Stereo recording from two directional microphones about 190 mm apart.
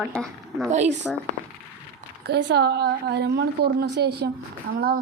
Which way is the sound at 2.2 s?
65° right (ahead or behind).